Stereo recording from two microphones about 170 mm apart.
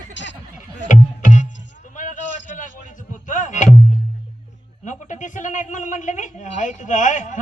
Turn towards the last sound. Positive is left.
turn(degrees=45)  # may be behind; listen again after turning